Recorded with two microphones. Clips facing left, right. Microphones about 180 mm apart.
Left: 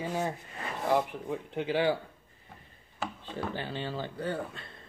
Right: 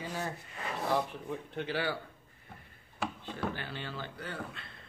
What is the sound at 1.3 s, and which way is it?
Speech, 15° left (ahead or behind).